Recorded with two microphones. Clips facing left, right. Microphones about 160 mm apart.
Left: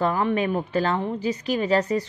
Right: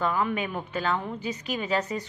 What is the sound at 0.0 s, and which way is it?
A woman's voice, 40° left (ahead or behind).